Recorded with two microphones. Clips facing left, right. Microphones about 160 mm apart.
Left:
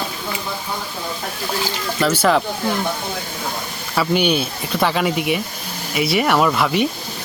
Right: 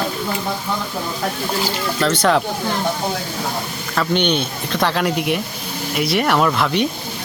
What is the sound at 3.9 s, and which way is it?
Speech, 5° left (ahead or behind).